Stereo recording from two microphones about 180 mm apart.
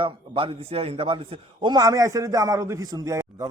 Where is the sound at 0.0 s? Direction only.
30° right (ahead or behind).